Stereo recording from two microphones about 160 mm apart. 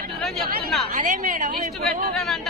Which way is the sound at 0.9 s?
50° right (ahead or behind).